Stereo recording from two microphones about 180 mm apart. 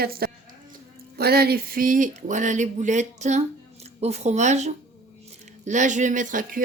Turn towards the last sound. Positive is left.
turn(degrees=-50)  # may be behind; listen again after turning